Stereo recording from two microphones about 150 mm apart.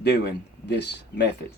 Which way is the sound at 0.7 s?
90° left.